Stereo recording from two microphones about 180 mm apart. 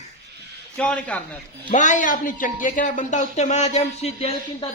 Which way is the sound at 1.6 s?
45° left (ahead or behind).